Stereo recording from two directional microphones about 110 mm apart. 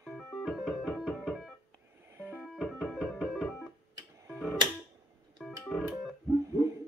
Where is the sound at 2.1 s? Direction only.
20° right (ahead or behind).